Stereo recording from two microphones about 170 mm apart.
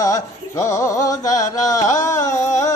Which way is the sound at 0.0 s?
20° left (ahead or behind).